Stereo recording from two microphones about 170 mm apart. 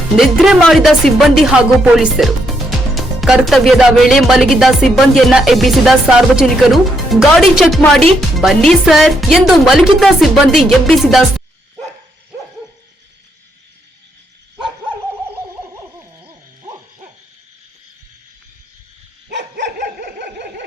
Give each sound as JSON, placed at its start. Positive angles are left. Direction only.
{"t": 0.2, "sound": "speech", "side_deg": 0}
{"t": 15.7, "sound": "a sound", "side_deg": -15}
{"t": 19.5, "sound": "dog", "side_deg": -90}